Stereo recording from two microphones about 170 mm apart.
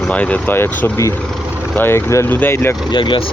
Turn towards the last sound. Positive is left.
turn(degrees=30)  # may be behind; listen again after turning